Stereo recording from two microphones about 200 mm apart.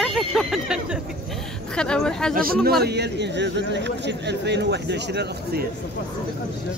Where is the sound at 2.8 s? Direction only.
55° right (ahead or behind).